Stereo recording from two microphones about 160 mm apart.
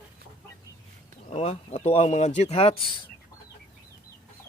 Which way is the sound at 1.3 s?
45° left (ahead or behind).